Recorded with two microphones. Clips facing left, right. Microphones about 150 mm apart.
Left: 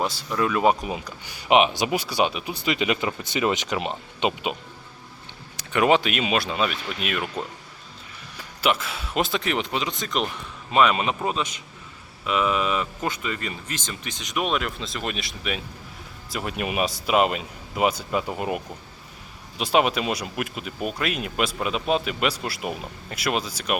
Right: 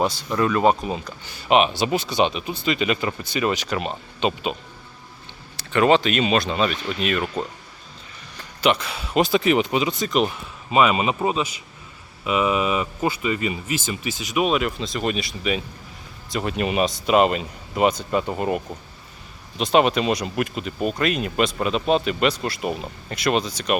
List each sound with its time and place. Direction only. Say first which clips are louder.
0.0 s speech: right 3 dB; centre (ahead or behind)
5.5 s speech: right 2 dB; 10° left (ahead or behind)
8.4 s speech: right 3 dB; 5° left (ahead or behind)